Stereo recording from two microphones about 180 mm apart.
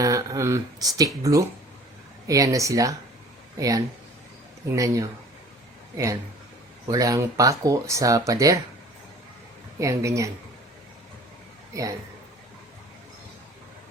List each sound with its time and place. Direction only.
0.0 s speech: 20° right (ahead or behind)
6.8 s speech: 20° right (ahead or behind)
9.8 s speech: 15° right (ahead or behind)
11.7 s speech: 20° right (ahead or behind)